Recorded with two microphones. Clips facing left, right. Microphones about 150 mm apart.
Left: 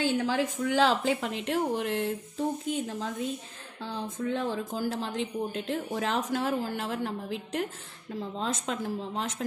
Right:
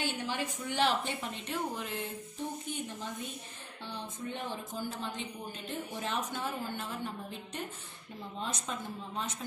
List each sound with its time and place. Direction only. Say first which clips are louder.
0.2 s a woman's voice: left 8 dB; 90° left
1.8 s a sound: left 9 dB; 75° left (ahead or behind)
2.6 s a woman's voice: left 8 dB; 90° left